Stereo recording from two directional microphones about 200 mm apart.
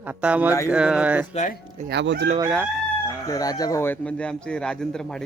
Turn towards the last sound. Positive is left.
turn(degrees=5)  # may be behind; listen again after turning